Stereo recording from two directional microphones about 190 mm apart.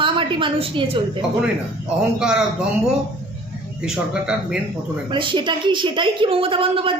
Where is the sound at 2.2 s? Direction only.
5° right (ahead or behind).